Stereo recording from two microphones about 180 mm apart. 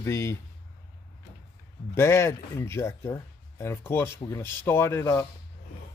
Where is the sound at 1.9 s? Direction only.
15° left (ahead or behind).